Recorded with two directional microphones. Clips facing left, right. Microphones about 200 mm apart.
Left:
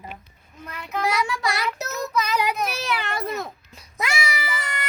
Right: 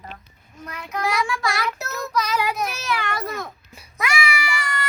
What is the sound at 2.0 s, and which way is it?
Child singing, 20° left (ahead or behind).